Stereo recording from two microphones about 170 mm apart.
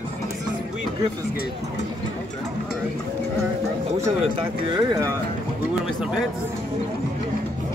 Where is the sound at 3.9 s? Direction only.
35° right (ahead or behind).